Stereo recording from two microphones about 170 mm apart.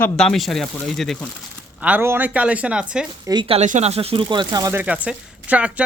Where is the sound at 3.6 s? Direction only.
45° right (ahead or behind); by 5.8 s 10° right (ahead or behind).